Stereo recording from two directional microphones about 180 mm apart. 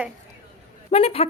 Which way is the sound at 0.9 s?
35° left (ahead or behind).